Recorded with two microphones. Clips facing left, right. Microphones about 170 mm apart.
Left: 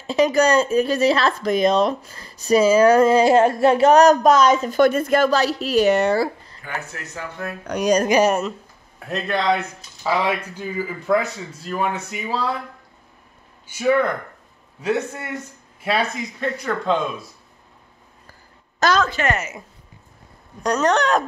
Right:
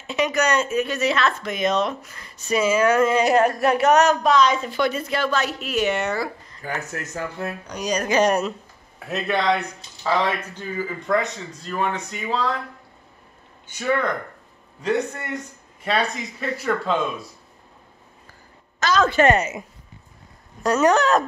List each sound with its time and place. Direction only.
0.0 s speech: 35° left (ahead or behind)
6.9 s speech: 45° right (ahead or behind)
7.6 s speech: 60° left (ahead or behind)
8.1 s speech: 5° left (ahead or behind)
13.7 s speech: 5° left (ahead or behind)
18.8 s speech: 35° left (ahead or behind)
19.2 s a woman's voice: 25° right (ahead or behind)
20.6 s speech: 5° right (ahead or behind)